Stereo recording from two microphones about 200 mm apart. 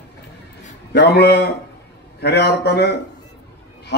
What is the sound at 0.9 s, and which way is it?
A man's voice, 55° left (ahead or behind).